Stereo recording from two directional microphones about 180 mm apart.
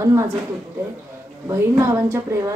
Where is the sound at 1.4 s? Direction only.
15° right (ahead or behind).